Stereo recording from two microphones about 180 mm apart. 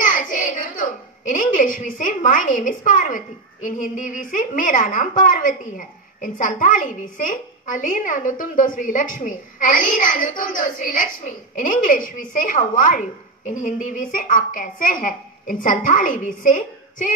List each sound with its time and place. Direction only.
0.0 s a child's voice: 45° left (ahead or behind)